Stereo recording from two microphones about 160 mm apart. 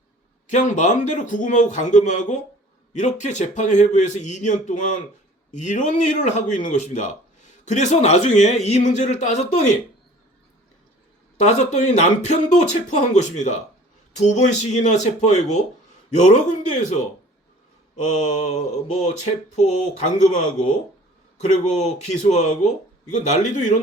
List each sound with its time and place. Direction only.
0.4 s a man's voice: 50° left (ahead or behind)
11.4 s a man's voice: 45° left (ahead or behind)